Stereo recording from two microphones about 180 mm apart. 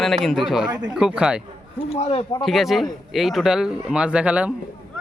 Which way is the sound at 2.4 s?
Centre (ahead or behind).